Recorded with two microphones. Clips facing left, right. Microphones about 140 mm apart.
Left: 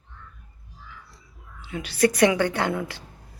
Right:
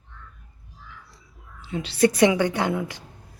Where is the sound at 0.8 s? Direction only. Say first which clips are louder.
Even; centre (ahead or behind).